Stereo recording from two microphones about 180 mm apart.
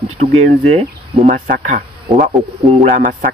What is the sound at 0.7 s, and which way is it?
Speech, 35° right (ahead or behind).